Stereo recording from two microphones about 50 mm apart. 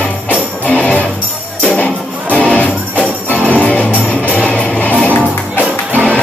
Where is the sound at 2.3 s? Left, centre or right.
Left.